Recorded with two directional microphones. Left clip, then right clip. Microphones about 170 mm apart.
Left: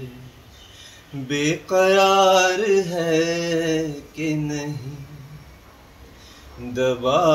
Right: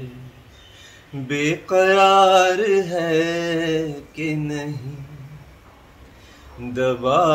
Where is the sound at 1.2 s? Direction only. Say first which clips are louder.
Right 1 dB; 10° right (ahead or behind).